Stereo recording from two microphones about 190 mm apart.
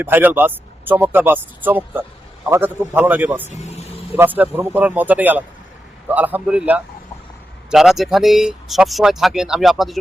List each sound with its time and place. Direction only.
0.0 s speech: 10° right (ahead or behind)
3.6 s vehicle: 35° left (ahead or behind)
4.2 s speech: 10° right (ahead or behind)